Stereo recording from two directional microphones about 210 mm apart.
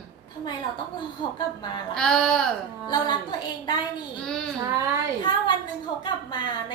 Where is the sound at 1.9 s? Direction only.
5° left (ahead or behind).